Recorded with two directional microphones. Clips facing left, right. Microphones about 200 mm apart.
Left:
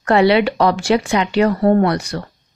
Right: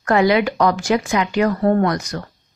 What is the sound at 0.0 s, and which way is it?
Speech, 30° left (ahead or behind).